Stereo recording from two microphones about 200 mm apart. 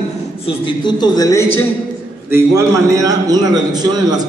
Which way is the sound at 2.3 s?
15° right (ahead or behind).